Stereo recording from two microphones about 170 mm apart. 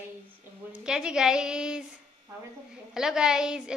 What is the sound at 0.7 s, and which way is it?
A woman's voice, 5° right (ahead or behind).